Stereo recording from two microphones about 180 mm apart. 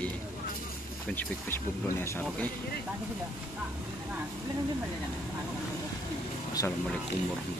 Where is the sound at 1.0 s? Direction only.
10° left (ahead or behind).